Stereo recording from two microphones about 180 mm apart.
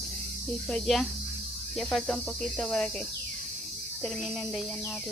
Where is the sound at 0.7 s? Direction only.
Centre (ahead or behind).